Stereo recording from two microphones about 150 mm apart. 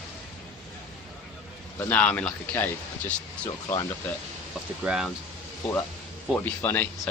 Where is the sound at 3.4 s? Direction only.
30° left (ahead or behind).